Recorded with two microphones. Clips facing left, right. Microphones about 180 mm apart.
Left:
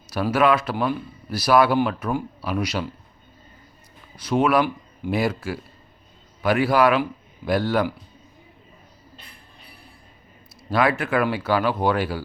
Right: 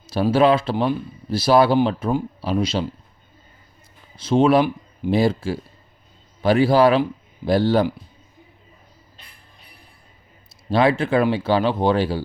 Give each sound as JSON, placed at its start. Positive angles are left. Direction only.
{"t": 0.1, "sound": "speech", "side_deg": -30}
{"t": 4.2, "sound": "speech", "side_deg": -25}
{"t": 10.7, "sound": "speech", "side_deg": -30}